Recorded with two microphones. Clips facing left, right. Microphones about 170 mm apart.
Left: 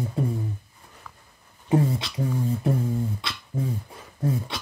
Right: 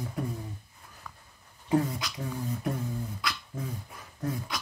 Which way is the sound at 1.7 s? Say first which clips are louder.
Left 4 dB; 30° left (ahead or behind).